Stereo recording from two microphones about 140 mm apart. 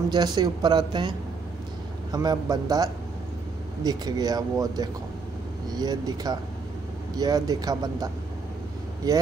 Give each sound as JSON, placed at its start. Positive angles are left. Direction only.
{"t": 0.1, "sound": "speech", "side_deg": -30}
{"t": 2.1, "sound": "speech", "side_deg": -25}